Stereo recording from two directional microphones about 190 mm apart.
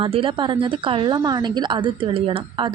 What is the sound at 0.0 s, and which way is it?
A woman's voice, 30° right (ahead or behind).